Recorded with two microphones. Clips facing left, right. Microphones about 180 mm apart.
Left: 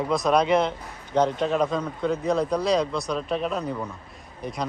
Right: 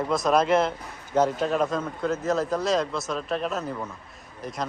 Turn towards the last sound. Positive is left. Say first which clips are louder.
# left 1 dB
turn(degrees=0)  # may be behind; listen again after turning